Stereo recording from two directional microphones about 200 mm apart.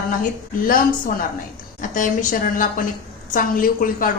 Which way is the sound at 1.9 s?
40° left (ahead or behind).